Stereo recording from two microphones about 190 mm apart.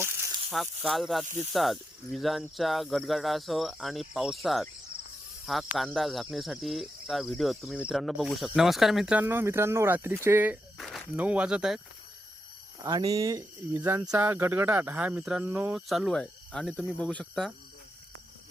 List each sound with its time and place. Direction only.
0.5 s speech: centre (ahead or behind)
10.8 s speech: centre (ahead or behind)
12.8 s speech: 20° right (ahead or behind); by 17.5 s 5° left (ahead or behind)